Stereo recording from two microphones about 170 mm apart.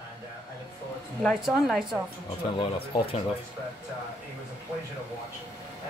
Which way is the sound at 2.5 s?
30° left (ahead or behind).